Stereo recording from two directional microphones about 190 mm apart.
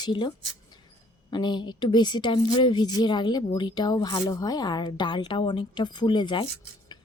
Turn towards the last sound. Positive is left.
turn(degrees=25)  # may be behind; listen again after turning